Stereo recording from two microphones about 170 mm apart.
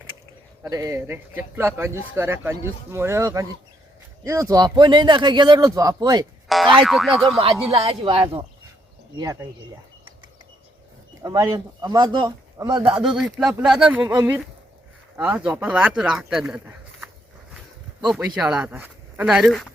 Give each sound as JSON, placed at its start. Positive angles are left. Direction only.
{"t": 0.6, "sound": "speech", "side_deg": -20}
{"t": 6.5, "sound": "speech", "side_deg": 0}
{"t": 7.8, "sound": "speech", "side_deg": -35}
{"t": 9.1, "sound": "speech", "side_deg": -20}
{"t": 11.2, "sound": "speech", "side_deg": -20}
{"t": 13.0, "sound": "speech", "side_deg": -5}